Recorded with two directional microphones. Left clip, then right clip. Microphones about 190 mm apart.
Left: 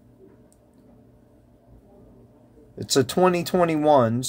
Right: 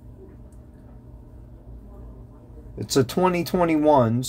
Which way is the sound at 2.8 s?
30° left (ahead or behind).